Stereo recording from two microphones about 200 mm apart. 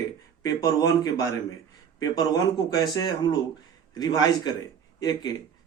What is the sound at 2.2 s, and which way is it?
Speech, 20° left (ahead or behind).